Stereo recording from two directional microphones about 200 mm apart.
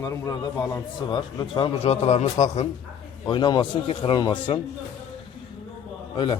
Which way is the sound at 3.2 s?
20° left (ahead or behind).